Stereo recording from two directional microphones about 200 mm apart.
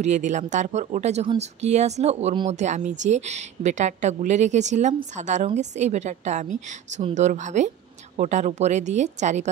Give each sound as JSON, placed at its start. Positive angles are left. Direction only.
{"t": 0.0, "sound": "speech", "side_deg": -35}